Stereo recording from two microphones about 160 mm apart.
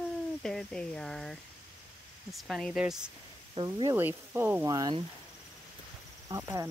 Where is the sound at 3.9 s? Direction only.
15° right (ahead or behind).